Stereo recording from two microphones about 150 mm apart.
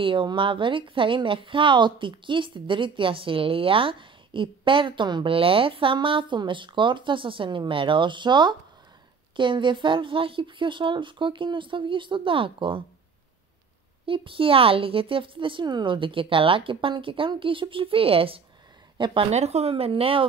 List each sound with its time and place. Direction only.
0.0 s speech: 35° right (ahead or behind)
14.0 s speech: 35° right (ahead or behind)
19.3 s speech: 45° right (ahead or behind)